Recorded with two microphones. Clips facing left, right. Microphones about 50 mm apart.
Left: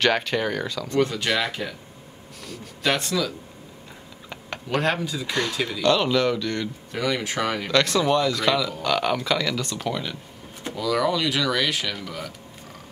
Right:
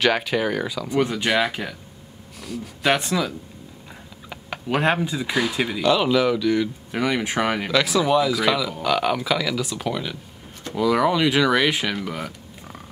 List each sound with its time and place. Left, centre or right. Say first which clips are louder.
0.0 s speech: right 1 dB; centre
2.4 s speech: right 6 dB; centre
2.8 s speech: right 2 dB; centre
4.3 s typing: right 2 dB; centre
4.8 s speech: right 3 dB; right
5.3 s speech: right 2 dB; centre
6.9 s speech: even; centre
7.7 s speech: right 1 dB; centre
10.7 s speech: right 4 dB; right